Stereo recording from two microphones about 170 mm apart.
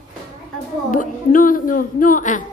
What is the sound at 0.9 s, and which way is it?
A woman's voice, 50° left (ahead or behind).